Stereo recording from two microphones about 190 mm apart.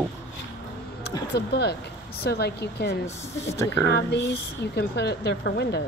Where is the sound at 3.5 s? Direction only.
15° left (ahead or behind).